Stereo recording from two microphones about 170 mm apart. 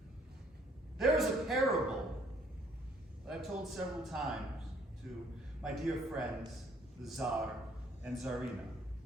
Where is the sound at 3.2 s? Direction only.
5° right (ahead or behind).